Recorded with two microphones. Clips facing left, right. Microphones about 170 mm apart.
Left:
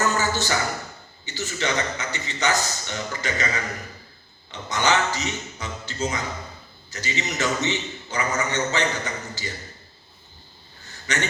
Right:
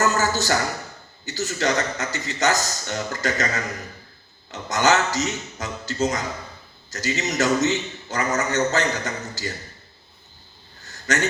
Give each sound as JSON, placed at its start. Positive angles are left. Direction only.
{"t": 0.0, "sound": "speech", "side_deg": -40}